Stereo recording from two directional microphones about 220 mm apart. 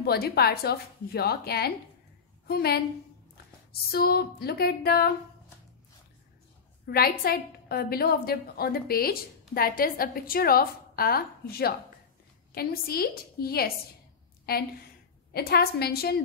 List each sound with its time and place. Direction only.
0.0 s a woman's voice: 45° left (ahead or behind)
3.9 s a woman's voice: 45° left (ahead or behind)
6.9 s a woman's voice: 45° left (ahead or behind)